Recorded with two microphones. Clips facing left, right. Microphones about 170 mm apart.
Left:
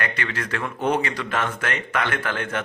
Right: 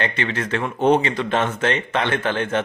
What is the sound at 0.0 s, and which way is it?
Speech, 25° right (ahead or behind).